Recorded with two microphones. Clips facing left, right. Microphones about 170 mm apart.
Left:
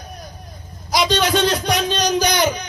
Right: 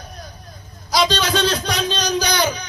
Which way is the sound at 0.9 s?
20° left (ahead or behind).